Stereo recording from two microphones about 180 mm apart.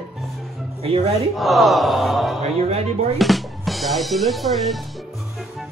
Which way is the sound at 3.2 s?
Centre (ahead or behind).